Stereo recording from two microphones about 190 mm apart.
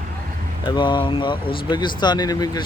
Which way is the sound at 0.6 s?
25° left (ahead or behind).